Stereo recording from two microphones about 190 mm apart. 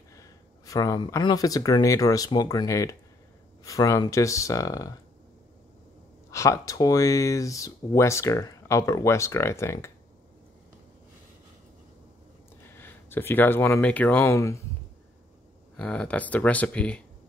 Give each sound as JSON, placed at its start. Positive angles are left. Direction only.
{"t": 0.1, "sound": "speech", "side_deg": 15}
{"t": 6.3, "sound": "speech", "side_deg": 15}
{"t": 12.6, "sound": "speech", "side_deg": 10}
{"t": 15.7, "sound": "speech", "side_deg": 5}